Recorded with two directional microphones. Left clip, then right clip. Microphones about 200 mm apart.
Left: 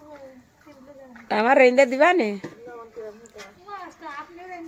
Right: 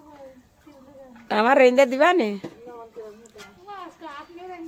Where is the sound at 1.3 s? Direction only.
5° right (ahead or behind).